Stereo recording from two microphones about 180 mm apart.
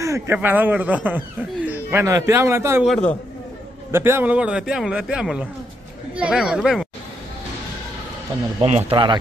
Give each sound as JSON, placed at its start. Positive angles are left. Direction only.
{"t": 0.0, "sound": "a man's voice", "side_deg": -15}
{"t": 2.8, "sound": "a man's voice", "side_deg": 0}
{"t": 3.9, "sound": "a man's voice", "side_deg": -15}
{"t": 8.5, "sound": "speech", "side_deg": -35}